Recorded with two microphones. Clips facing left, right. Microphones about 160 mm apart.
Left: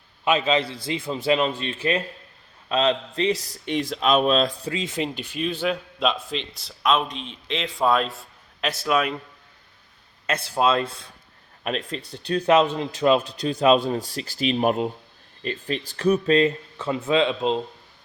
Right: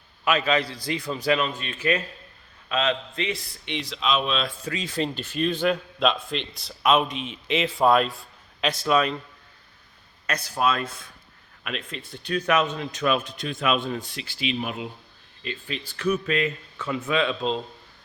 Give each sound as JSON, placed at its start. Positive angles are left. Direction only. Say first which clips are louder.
{"t": 0.3, "sound": "a man's voice", "louder": "left 2 dB", "side_deg": 25}
{"t": 4.7, "sound": "a man's voice", "louder": "left 1 dB", "side_deg": 25}
{"t": 10.2, "sound": "a man's voice", "louder": "left 3 dB", "side_deg": 25}